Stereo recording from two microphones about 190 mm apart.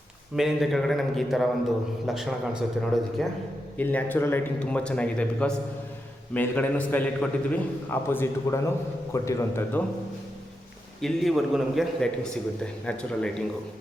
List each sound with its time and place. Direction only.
0.3 s a man's voice: centre (ahead or behind)
3.8 s a man's voice: 10° left (ahead or behind)
11.0 s a man's voice: centre (ahead or behind)